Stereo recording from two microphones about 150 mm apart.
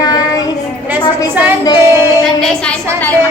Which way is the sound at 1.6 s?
25° left (ahead or behind).